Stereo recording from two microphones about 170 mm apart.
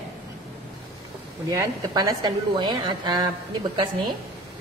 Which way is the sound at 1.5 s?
20° right (ahead or behind).